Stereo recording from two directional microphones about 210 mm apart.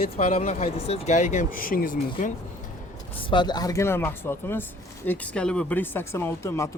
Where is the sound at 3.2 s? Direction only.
25° left (ahead or behind).